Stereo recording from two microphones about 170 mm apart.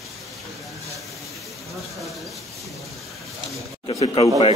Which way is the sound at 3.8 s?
30° left (ahead or behind).